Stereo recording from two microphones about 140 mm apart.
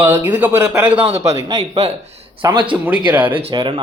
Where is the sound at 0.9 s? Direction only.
45° right (ahead or behind).